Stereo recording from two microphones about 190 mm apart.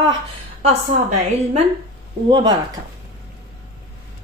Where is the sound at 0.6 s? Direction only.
35° right (ahead or behind).